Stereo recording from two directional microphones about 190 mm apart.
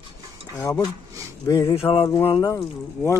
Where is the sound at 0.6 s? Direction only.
15° left (ahead or behind).